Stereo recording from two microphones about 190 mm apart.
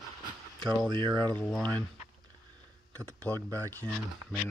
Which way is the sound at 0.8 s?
25° right (ahead or behind).